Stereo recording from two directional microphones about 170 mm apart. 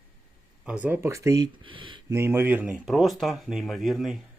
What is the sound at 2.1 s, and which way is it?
Speech, 15° right (ahead or behind).